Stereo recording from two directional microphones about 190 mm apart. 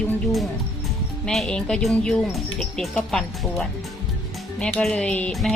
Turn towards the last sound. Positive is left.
turn(degrees=0)  # may be behind; listen again after turning